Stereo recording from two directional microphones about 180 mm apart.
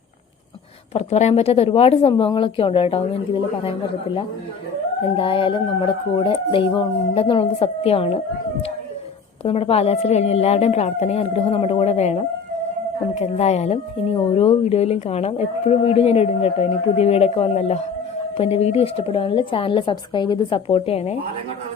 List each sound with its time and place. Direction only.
0.9 s speech: 35° left (ahead or behind)
9.4 s speech: 35° left (ahead or behind)